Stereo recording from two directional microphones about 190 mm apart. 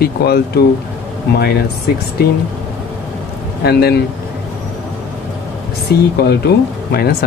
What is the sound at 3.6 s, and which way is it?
Speech, 55° left (ahead or behind).